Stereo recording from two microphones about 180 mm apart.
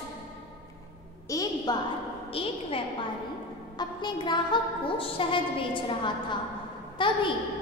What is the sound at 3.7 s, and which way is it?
A woman's voice, 25° left (ahead or behind).